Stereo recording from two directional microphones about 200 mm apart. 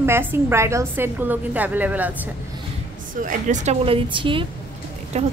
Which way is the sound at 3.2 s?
40° right (ahead or behind).